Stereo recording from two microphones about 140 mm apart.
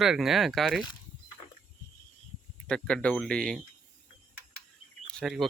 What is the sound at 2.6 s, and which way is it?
Speech, 5° left (ahead or behind).